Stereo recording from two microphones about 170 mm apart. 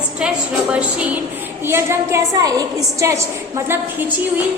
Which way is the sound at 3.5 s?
10° right (ahead or behind).